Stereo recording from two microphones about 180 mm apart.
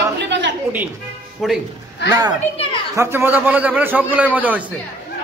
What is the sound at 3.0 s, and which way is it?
A man's voice, 15° right (ahead or behind).